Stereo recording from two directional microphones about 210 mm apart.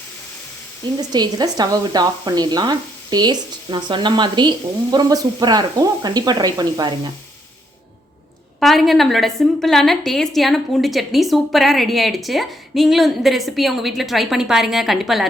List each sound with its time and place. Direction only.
1.1 s speech: 20° right (ahead or behind)
8.6 s a woman's voice: centre (ahead or behind)